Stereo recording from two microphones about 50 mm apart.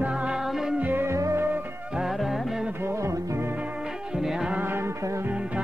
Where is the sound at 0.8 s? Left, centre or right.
Right.